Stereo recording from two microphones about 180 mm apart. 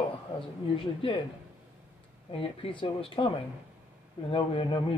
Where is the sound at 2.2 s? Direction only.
30° left (ahead or behind).